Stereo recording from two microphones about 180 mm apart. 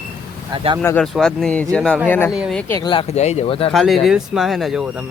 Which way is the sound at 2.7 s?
25° left (ahead or behind).